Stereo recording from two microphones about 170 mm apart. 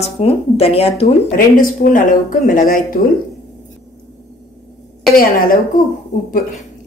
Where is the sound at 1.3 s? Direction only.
55° left (ahead or behind).